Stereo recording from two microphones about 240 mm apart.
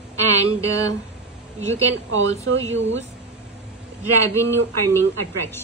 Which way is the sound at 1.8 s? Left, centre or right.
Right.